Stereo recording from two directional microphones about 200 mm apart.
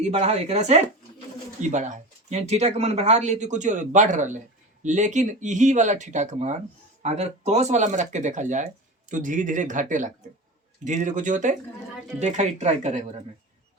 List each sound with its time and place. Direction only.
0.0 s speech: 30° right (ahead or behind)